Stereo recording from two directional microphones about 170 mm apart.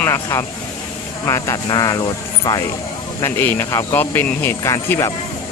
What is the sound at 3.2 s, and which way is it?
Speech, 10° left (ahead or behind).